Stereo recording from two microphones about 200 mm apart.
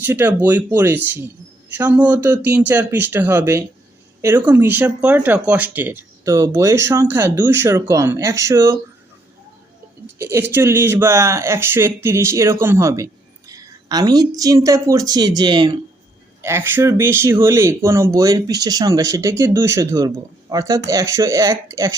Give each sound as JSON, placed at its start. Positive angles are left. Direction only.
{"t": 0.0, "sound": "speech", "side_deg": -10}
{"t": 10.2, "sound": "a woman's voice", "side_deg": -15}